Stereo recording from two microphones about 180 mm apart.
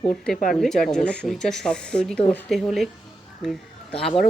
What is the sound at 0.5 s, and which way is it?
Speech, centre (ahead or behind).